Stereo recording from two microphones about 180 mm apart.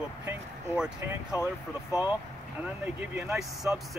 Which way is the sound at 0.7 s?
5° right (ahead or behind).